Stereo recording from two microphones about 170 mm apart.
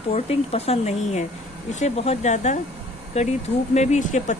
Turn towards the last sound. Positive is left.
turn(degrees=45)  # may be behind; listen again after turning